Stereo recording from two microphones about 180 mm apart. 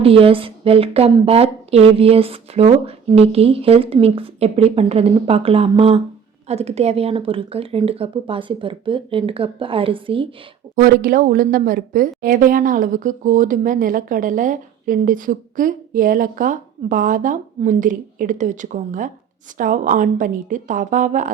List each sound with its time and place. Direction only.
0.0 s a woman's voice: 30° right (ahead or behind)
10.8 s speech: 50° right (ahead or behind)